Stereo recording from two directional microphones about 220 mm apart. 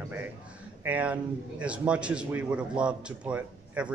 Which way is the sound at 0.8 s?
5° right (ahead or behind).